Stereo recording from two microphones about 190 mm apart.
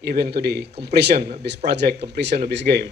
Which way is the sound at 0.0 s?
55° right (ahead or behind).